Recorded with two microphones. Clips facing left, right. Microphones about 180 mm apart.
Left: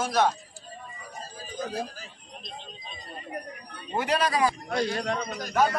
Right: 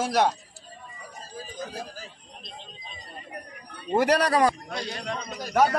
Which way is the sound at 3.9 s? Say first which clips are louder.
Right 5 dB; 70° right (ahead or behind).